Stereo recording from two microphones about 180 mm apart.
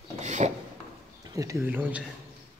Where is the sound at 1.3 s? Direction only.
20° right (ahead or behind).